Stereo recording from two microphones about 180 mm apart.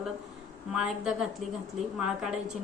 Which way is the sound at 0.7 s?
5° right (ahead or behind).